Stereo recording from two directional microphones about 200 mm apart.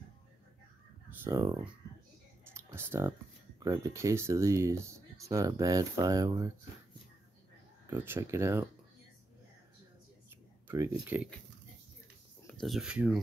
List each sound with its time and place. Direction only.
1.2 s speech: 15° right (ahead or behind)
2.4 s clicking: 10° right (ahead or behind)
3.5 s speech: 15° right (ahead or behind)
7.9 s speech: 10° right (ahead or behind)
10.7 s speech: 10° right (ahead or behind)
12.5 s speech: centre (ahead or behind)